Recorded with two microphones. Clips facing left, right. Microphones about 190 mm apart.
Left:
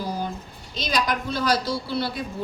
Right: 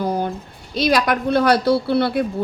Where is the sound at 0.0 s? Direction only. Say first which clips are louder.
Right 7 dB; 60° right (ahead or behind).